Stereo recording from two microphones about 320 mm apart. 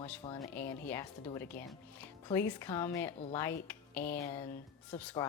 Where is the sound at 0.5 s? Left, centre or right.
Centre.